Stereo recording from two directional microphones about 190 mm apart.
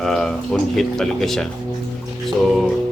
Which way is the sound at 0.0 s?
5° left (ahead or behind).